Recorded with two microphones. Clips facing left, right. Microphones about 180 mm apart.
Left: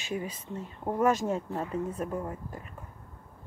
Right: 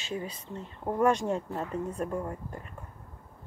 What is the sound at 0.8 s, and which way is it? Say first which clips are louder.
Speech: right 1 dB; 5° left (ahead or behind).